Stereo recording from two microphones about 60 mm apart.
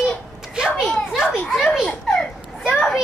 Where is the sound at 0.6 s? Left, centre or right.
Centre.